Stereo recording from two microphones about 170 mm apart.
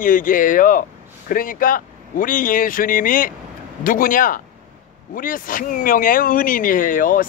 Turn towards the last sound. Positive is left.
turn(degrees=55)  # may be behind; listen again after turning